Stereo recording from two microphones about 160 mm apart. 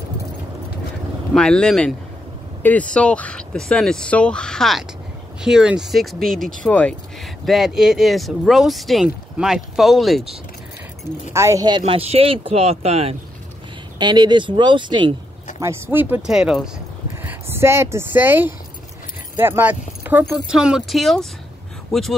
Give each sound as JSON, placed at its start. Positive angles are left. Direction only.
{"t": 1.3, "sound": "speech", "side_deg": 5}
{"t": 11.3, "sound": "speech", "side_deg": -20}
{"t": 11.8, "sound": "speech", "side_deg": -40}
{"t": 13.9, "sound": "speech", "side_deg": -30}
{"t": 15.6, "sound": "speech", "side_deg": -15}